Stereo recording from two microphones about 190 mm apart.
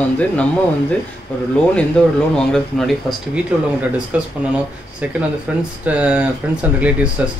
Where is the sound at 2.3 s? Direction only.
Centre (ahead or behind).